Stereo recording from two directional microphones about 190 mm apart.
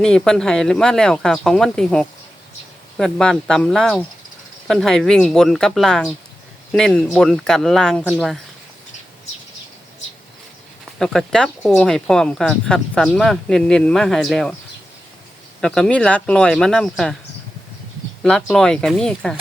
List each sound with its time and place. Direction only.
0.0 s speech: 5° left (ahead or behind)
11.0 s speech: centre (ahead or behind)
15.6 s speech: 5° left (ahead or behind)
18.2 s speech: centre (ahead or behind)